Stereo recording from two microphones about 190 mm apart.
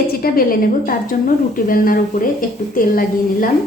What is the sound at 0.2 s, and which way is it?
A woman's voice, 50° left (ahead or behind).